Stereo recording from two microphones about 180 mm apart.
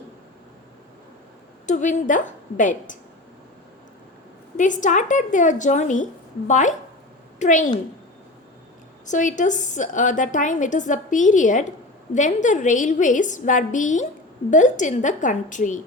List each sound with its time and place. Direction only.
1.6 s a woman's voice: 45° left (ahead or behind)
4.5 s a woman's voice: 45° left (ahead or behind)
9.0 s a woman's voice: 45° left (ahead or behind)